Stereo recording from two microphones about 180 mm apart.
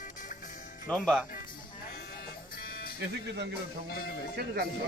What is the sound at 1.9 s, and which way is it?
Music, 60° left (ahead or behind).